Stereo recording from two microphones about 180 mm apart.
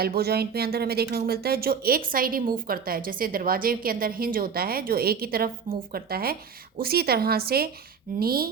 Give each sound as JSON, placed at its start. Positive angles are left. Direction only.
{"t": 0.0, "sound": "a woman's voice", "side_deg": -60}